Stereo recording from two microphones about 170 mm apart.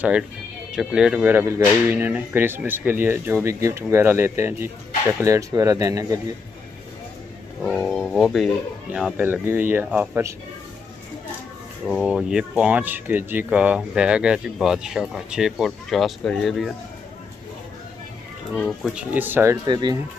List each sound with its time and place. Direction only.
0.7 s speech: 5° right (ahead or behind); by 6.3 s 20° right (ahead or behind)
7.6 s speech: centre (ahead or behind)
9.1 s speech: 10° right (ahead or behind)
11.8 s speech: 5° right (ahead or behind)
18.5 s speech: 5° right (ahead or behind)
19.6 s speech: 25° right (ahead or behind)